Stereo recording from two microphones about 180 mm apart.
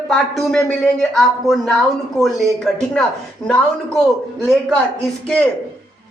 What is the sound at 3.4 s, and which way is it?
Speech, 5° left (ahead or behind).